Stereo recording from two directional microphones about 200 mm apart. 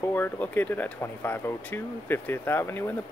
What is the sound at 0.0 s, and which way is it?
Speech, 10° left (ahead or behind).